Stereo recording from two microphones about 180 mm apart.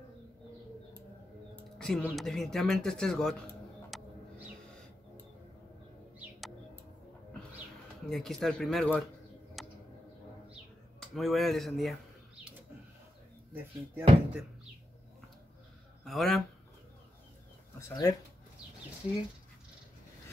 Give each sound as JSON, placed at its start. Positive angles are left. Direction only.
{"t": 1.5, "sound": "music", "side_deg": 5}
{"t": 2.0, "sound": "speech", "side_deg": 0}
{"t": 3.9, "sound": "a sound", "side_deg": 0}
{"t": 8.1, "sound": "speech", "side_deg": 0}
{"t": 9.6, "sound": "a sound", "side_deg": 0}
{"t": 11.0, "sound": "speech", "side_deg": 0}
{"t": 13.5, "sound": "speech", "side_deg": -10}
{"t": 16.0, "sound": "speech", "side_deg": 0}
{"t": 17.7, "sound": "speech", "side_deg": 15}